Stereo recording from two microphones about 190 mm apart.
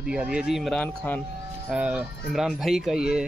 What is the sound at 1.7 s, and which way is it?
Speech, 5° right (ahead or behind).